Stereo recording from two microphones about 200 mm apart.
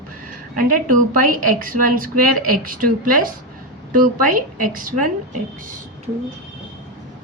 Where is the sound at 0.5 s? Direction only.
45° right (ahead or behind).